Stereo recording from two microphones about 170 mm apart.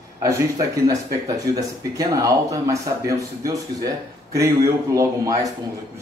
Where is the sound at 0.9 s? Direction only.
20° right (ahead or behind).